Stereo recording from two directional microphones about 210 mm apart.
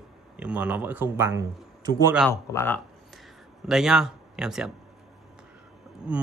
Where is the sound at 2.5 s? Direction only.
10° left (ahead or behind).